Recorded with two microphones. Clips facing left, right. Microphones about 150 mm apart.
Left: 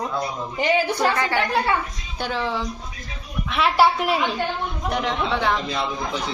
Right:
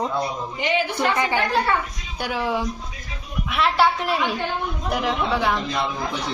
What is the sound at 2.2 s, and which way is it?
Speech, 10° right (ahead or behind).